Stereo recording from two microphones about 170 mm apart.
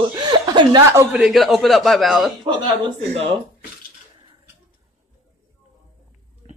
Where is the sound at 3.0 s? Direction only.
35° right (ahead or behind).